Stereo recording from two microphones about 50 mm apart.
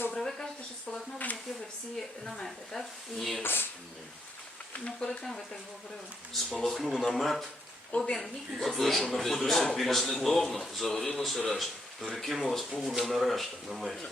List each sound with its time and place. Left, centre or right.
0.1 s a sound: centre
2.2 s speech: centre
3.4 s speech: left
4.9 s speech: centre